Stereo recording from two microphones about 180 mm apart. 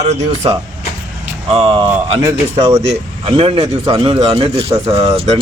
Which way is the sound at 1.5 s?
30° right (ahead or behind).